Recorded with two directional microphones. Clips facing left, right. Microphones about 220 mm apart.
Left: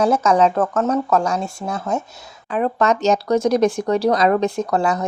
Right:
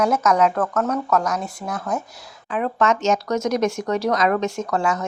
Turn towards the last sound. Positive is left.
turn(degrees=35)  # may be behind; listen again after turning